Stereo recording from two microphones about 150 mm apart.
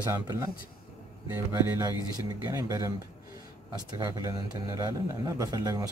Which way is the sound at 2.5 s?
20° right (ahead or behind).